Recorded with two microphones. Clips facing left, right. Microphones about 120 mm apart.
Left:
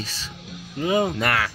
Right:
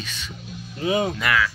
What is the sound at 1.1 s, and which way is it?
Speech, 45° left (ahead or behind).